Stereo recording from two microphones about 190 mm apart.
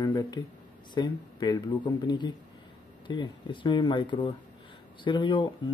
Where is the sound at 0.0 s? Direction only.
25° left (ahead or behind).